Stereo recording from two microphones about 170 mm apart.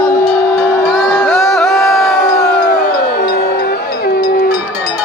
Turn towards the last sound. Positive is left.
turn(degrees=60)  # may be behind; listen again after turning